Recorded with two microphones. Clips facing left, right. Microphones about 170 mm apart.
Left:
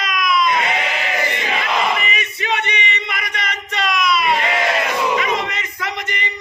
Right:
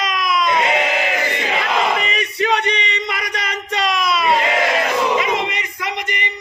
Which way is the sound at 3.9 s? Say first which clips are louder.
Left 1 dB; 30° right (ahead or behind).